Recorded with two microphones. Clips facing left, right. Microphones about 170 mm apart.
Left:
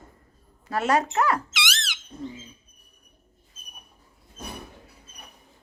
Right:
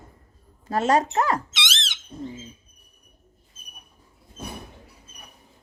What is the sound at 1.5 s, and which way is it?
Squeak, 25° right (ahead or behind).